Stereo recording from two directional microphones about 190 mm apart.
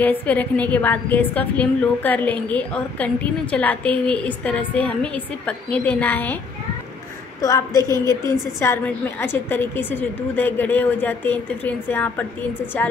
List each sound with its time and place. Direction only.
0.0 s a woman's voice: 10° left (ahead or behind)
7.4 s a woman's voice: 15° left (ahead or behind)